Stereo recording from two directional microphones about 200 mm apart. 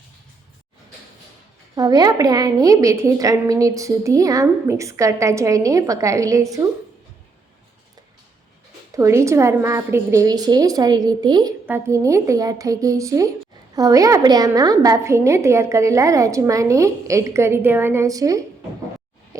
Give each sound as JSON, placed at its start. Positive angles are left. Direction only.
{"t": 1.7, "sound": "a woman's voice", "side_deg": -20}
{"t": 9.0, "sound": "a woman's voice", "side_deg": -15}